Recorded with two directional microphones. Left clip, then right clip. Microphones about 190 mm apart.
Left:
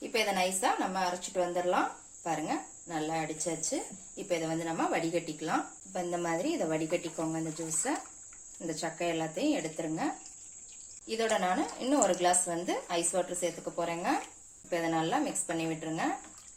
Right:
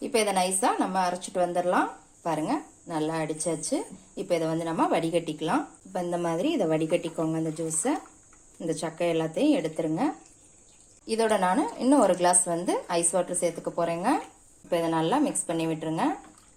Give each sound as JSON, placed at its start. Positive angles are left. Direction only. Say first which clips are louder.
{"t": 0.0, "sound": "speech", "louder": "right 5 dB", "side_deg": -45}
{"t": 5.1, "sound": "speech", "louder": "right 6 dB", "side_deg": 0}
{"t": 5.5, "sound": "speech", "louder": "right 5 dB", "side_deg": -40}
{"t": 8.6, "sound": "speech", "louder": "right 6 dB", "side_deg": -40}